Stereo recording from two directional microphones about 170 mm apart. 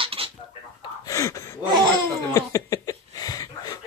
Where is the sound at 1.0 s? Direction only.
20° left (ahead or behind).